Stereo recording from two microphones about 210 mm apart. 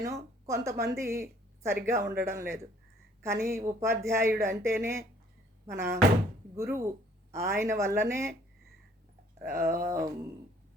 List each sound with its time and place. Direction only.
0.0 s speech: 15° right (ahead or behind)
9.4 s speech: 10° right (ahead or behind)